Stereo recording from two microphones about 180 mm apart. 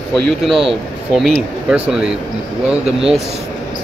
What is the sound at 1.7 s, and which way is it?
Speech, 5° right (ahead or behind).